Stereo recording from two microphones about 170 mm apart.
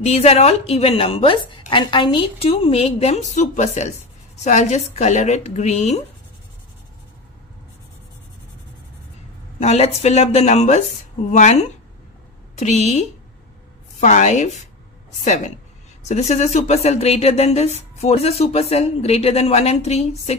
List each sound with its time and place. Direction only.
0.0 s speech: 40° left (ahead or behind)
9.6 s a woman's voice: 40° left (ahead or behind)